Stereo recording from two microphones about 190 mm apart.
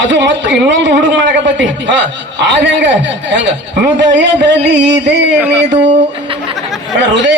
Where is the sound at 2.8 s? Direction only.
70° right (ahead or behind).